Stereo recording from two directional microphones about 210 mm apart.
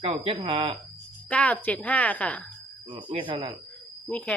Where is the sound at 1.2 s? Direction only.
5° left (ahead or behind).